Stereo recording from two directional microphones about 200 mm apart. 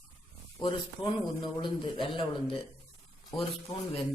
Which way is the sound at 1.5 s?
25° left (ahead or behind).